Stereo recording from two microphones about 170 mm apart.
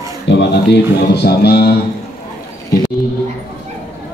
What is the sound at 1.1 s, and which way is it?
Music, 75° left (ahead or behind).